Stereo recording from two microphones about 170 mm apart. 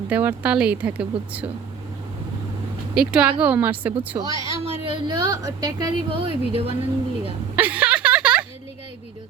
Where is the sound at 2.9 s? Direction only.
5° right (ahead or behind); by 6.7 s 35° right (ahead or behind).